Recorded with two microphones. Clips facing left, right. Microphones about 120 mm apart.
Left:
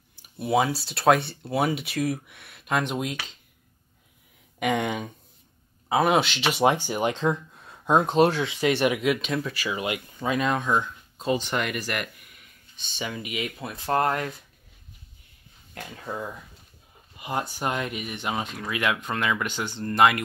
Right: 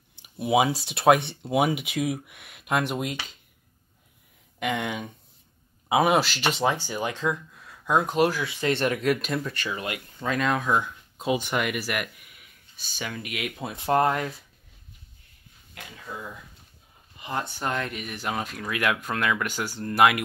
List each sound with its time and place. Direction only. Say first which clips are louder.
0.4 s speech: right 1 dB; 15° right (ahead or behind)
4.6 s speech: left 3 dB; 15° left (ahead or behind)
5.9 s speech: right 1 dB; 15° right (ahead or behind)
6.1 s speech: even; centre (ahead or behind)
6.5 s speech: left 7 dB; 15° left (ahead or behind)
8.7 s speech: left 1 dB; 5° left (ahead or behind)
9.8 s speech: left 4 dB; 20° left (ahead or behind)
10.1 s speech: even; 5° left (ahead or behind)
13.6 s speech: right 3 dB; 25° right (ahead or behind)
15.7 s speech: left 5 dB; 40° left (ahead or behind)
17.2 s speech: left 2 dB; 10° left (ahead or behind); by 20.2 s 5° right (ahead or behind)